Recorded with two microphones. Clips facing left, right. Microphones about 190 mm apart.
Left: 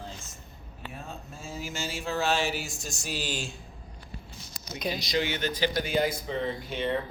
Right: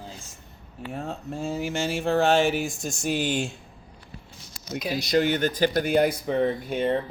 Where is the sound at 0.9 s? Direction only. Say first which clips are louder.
Right 12 dB; 75° right (ahead or behind); by 3.5 s 60° right (ahead or behind).